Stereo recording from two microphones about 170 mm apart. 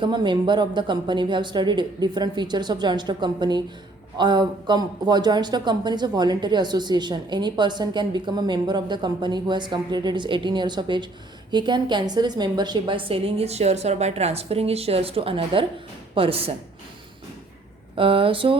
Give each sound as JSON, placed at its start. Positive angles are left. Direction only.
{"t": 0.0, "sound": "a woman's voice", "side_deg": -25}
{"t": 17.9, "sound": "a woman's voice", "side_deg": -30}